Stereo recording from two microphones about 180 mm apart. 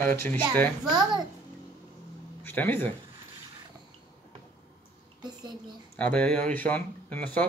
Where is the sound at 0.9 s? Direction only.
25° right (ahead or behind).